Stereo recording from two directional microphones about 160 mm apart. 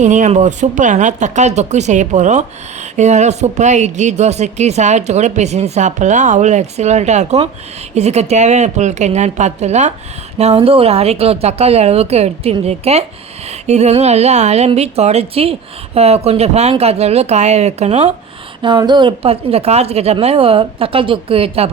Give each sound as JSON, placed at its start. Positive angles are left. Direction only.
{"t": 0.0, "sound": "a woman's voice", "side_deg": -50}